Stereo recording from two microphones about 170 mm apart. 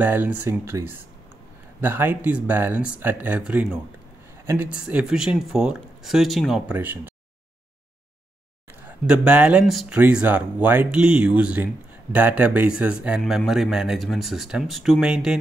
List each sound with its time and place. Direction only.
0.0 s speech: 10° right (ahead or behind)
8.8 s speech: 5° right (ahead or behind)